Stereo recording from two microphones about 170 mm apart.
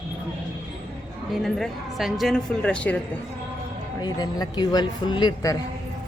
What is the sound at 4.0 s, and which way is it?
Speech, 25° left (ahead or behind).